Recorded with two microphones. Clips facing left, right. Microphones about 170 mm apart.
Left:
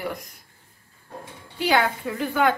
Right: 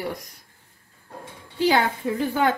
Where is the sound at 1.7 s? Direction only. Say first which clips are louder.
Left 1 dB; 30° right (ahead or behind).